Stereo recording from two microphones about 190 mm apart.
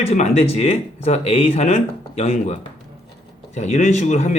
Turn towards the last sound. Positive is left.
turn(degrees=35)  # may be behind; listen again after turning